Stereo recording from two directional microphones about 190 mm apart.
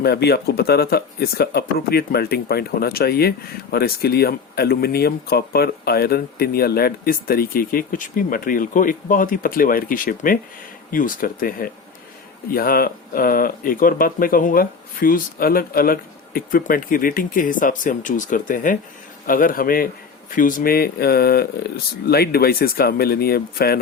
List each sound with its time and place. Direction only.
0.0 s speech: 60° left (ahead or behind)